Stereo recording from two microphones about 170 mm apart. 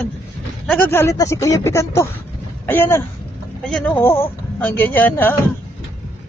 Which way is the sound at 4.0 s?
15° left (ahead or behind).